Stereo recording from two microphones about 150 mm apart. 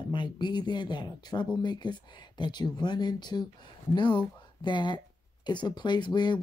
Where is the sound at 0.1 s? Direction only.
30° left (ahead or behind).